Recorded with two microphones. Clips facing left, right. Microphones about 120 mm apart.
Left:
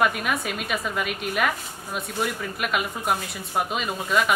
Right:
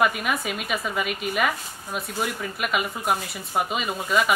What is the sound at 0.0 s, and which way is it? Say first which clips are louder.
Speech: even; centre (ahead or behind).